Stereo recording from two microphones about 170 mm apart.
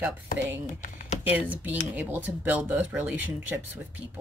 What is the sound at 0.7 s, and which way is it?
Computer keyboard, 50° left (ahead or behind).